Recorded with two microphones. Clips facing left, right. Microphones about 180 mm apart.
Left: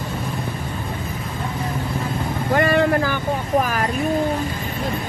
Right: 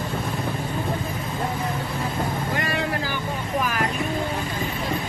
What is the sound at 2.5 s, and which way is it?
Vehicle, 55° left (ahead or behind).